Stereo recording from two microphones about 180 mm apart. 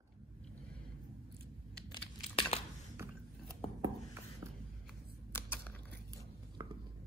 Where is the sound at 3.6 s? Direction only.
30° left (ahead or behind).